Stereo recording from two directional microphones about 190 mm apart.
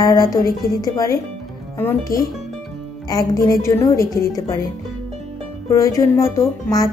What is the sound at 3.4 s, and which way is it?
Speech, 15° left (ahead or behind).